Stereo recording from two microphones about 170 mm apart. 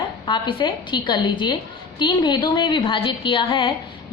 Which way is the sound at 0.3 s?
25° left (ahead or behind).